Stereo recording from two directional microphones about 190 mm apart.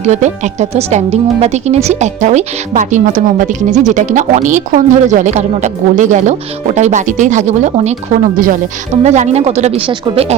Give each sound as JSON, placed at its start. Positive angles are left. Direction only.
{"t": 0.0, "sound": "a woman's voice", "side_deg": -35}